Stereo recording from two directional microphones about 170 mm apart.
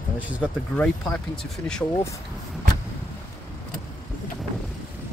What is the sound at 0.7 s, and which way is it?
Speech, 5° left (ahead or behind).